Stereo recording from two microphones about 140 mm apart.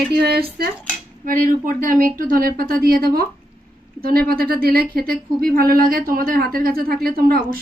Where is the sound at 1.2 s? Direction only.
75° right (ahead or behind).